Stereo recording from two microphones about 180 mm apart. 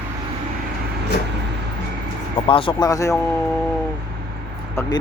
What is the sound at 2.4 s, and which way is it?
Speech, 30° left (ahead or behind).